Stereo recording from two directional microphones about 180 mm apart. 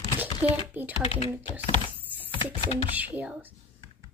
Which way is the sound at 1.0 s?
35° left (ahead or behind).